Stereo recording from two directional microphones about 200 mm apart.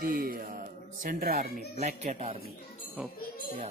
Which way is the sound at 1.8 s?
35° right (ahead or behind).